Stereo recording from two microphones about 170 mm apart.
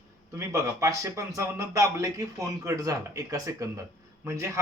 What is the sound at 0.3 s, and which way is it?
A man's voice, 20° right (ahead or behind).